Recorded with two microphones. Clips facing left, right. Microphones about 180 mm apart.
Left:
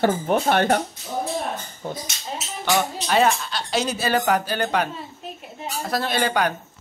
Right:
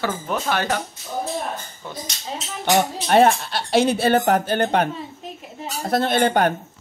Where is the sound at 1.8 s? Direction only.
45° left (ahead or behind).